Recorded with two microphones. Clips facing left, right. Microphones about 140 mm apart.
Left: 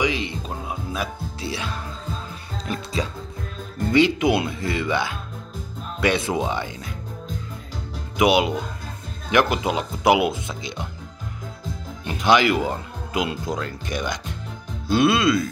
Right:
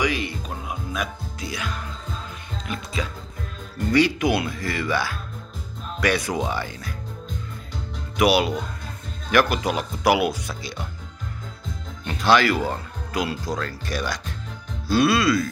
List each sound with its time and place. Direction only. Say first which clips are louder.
0.0 s music: left 1 dB; 25° left (ahead or behind)
2.6 s speech: left 3 dB; 35° left (ahead or behind)
3.9 s speech: left 2 dB; 20° left (ahead or behind)
8.2 s speech: left 1 dB; 20° left (ahead or behind)
12.1 s speech: left 1 dB; 20° left (ahead or behind)